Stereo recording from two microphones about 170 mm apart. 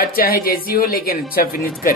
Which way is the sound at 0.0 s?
60° left (ahead or behind).